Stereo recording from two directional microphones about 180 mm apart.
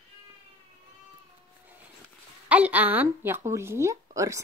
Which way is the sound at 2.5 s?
10° right (ahead or behind).